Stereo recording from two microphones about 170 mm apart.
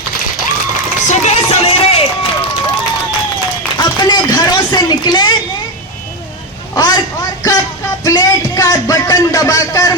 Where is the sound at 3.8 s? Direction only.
25° left (ahead or behind).